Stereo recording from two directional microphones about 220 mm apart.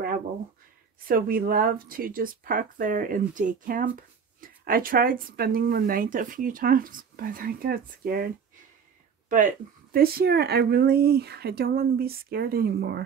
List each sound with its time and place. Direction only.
1.0 s speech: 40° right (ahead or behind)
9.3 s speech: 35° right (ahead or behind)